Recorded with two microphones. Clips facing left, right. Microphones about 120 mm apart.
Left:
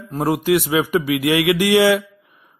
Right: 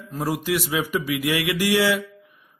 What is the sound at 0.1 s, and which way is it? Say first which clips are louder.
A man's voice: left 7 dB; 60° left (ahead or behind).